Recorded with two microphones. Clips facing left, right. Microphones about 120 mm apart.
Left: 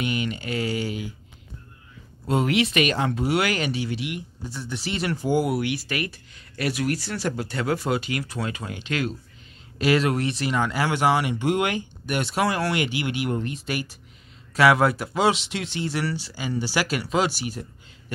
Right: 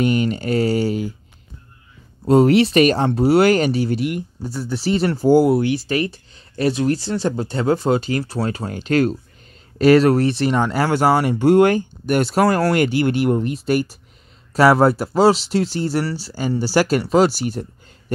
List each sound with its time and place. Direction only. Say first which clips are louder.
0.0 s speech: right 9 dB; 40° right (ahead or behind)
2.2 s speech: right 9 dB; 35° right (ahead or behind)